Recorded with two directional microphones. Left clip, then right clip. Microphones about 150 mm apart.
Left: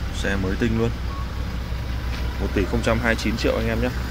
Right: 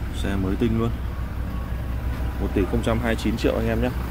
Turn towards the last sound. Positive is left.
turn(degrees=-30)  # may be behind; listen again after turning